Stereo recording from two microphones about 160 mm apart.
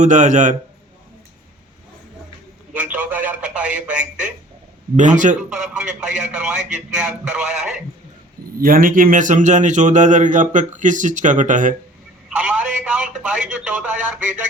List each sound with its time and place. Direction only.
0.0 s a man's voice: 50° right (ahead or behind)
2.9 s telephone: 10° right (ahead or behind)
4.9 s a man's voice: 50° right (ahead or behind)
5.4 s a man's voice: 5° right (ahead or behind)
8.5 s a man's voice: 65° right (ahead or behind)
12.4 s speech: 10° right (ahead or behind)